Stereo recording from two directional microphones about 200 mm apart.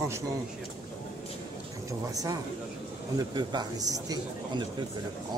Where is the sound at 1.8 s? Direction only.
15° right (ahead or behind).